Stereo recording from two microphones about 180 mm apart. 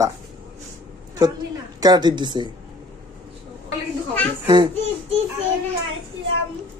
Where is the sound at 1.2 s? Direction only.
25° right (ahead or behind).